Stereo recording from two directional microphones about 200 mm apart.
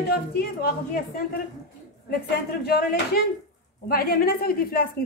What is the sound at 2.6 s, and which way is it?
Speech, 50° left (ahead or behind).